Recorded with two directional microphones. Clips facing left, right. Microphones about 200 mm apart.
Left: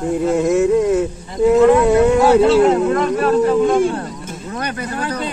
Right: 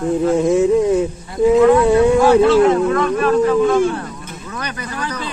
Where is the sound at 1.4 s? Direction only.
Centre (ahead or behind).